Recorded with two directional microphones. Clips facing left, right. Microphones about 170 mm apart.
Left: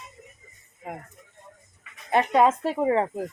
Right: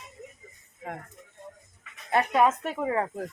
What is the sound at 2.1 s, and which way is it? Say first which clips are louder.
Speech: left 3 dB; 25° left (ahead or behind).